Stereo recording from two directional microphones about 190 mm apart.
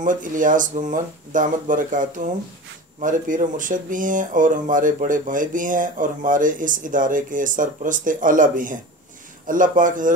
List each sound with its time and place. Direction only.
0.0 s speech: 45° right (ahead or behind)